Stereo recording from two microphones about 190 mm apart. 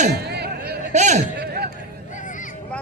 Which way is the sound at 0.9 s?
40° right (ahead or behind).